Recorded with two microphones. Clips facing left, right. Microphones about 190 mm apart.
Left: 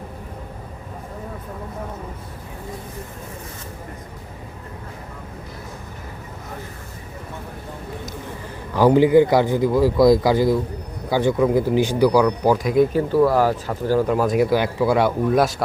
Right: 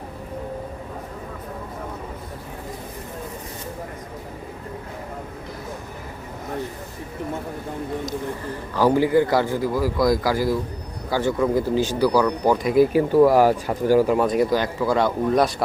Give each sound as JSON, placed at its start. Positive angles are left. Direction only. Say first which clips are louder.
{"t": 8.7, "sound": "a man's voice", "louder": "left 4 dB", "side_deg": 15}